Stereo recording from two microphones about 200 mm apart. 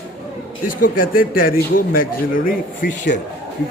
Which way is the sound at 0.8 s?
45° left (ahead or behind).